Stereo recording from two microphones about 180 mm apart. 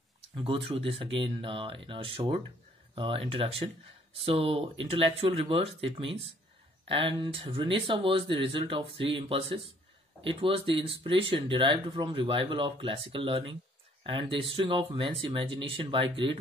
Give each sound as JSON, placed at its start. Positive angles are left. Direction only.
{"t": 0.4, "sound": "speech", "side_deg": -30}